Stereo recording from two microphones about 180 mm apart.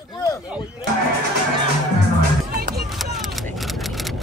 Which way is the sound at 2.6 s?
60° right (ahead or behind).